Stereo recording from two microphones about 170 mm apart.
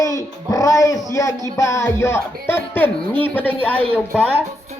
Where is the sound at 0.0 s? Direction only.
20° left (ahead or behind).